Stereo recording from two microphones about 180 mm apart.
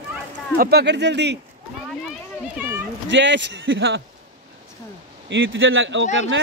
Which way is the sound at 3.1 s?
80° right.